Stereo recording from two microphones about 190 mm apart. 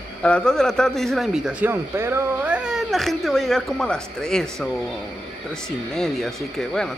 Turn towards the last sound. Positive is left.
turn(degrees=0)  # may be behind; listen again after turning